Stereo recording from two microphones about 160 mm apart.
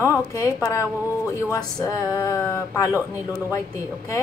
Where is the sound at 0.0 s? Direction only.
20° left (ahead or behind).